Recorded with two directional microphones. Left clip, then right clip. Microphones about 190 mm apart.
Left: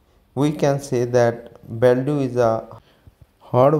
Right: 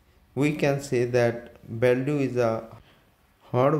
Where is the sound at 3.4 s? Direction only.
20° left (ahead or behind).